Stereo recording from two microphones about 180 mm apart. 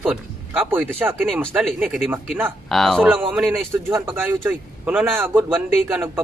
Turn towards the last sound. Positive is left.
turn(degrees=-10)  # may be behind; listen again after turning